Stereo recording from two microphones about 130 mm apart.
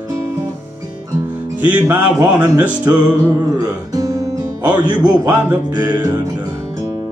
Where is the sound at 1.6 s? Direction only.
15° right (ahead or behind).